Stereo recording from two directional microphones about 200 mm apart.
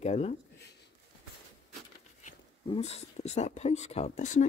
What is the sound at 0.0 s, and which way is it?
Speech, 35° left (ahead or behind).